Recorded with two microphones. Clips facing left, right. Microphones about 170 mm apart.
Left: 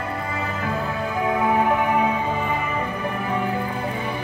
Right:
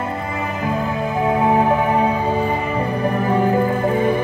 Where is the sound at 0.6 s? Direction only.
25° right (ahead or behind); by 4.1 s 50° right (ahead or behind).